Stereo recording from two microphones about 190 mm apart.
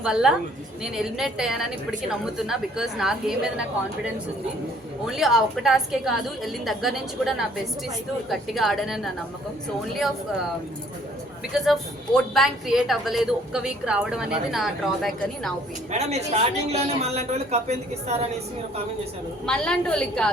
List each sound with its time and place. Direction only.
0.0 s a woman's voice: 5° right (ahead or behind)
5.0 s a woman's voice: centre (ahead or behind)
11.5 s a woman's voice: centre (ahead or behind)
15.9 s a man's voice: 35° right (ahead or behind)
19.5 s a woman's voice: 5° left (ahead or behind)